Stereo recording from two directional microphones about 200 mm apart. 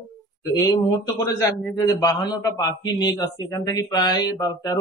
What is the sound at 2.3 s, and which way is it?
Speech, 20° left (ahead or behind).